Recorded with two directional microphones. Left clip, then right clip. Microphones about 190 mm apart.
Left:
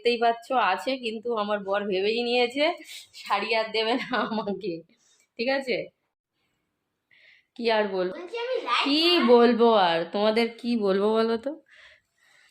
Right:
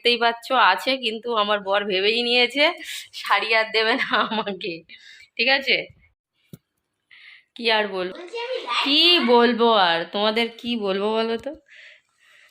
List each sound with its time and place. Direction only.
0.0 s a woman's voice: 5° right (ahead or behind)
7.1 s a sound: 5° left (ahead or behind)
8.5 s a woman's voice: centre (ahead or behind); by 11.9 s 30° left (ahead or behind)